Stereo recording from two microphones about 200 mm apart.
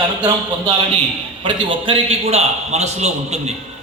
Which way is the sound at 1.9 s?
30° right (ahead or behind).